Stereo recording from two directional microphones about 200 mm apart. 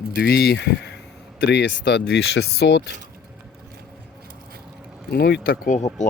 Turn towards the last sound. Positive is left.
turn(degrees=40)  # may be behind; listen again after turning